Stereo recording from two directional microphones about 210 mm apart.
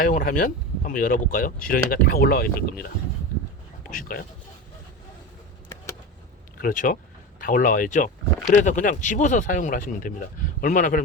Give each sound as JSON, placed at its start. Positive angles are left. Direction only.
{"t": 0.0, "sound": "speech", "side_deg": 40}
{"t": 3.8, "sound": "speech", "side_deg": 40}
{"t": 6.6, "sound": "speech", "side_deg": 40}